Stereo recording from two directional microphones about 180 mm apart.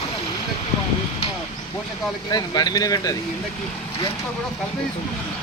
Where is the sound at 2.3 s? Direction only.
20° left (ahead or behind).